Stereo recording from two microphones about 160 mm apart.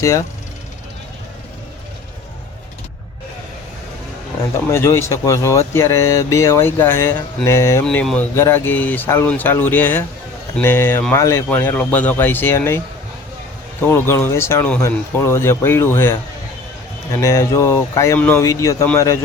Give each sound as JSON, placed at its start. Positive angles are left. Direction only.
{"t": 0.0, "sound": "speech", "side_deg": 20}
{"t": 4.7, "sound": "speech", "side_deg": 15}
{"t": 7.9, "sound": "speech", "side_deg": 5}
{"t": 13.8, "sound": "speech", "side_deg": 15}